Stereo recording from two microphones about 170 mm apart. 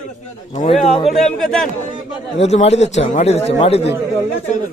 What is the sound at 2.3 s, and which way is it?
A man's voice, 40° left (ahead or behind).